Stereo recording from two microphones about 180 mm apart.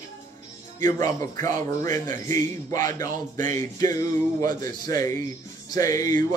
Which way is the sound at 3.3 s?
45° right (ahead or behind).